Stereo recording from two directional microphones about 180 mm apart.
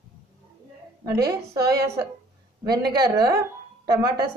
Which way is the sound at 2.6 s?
20° right (ahead or behind).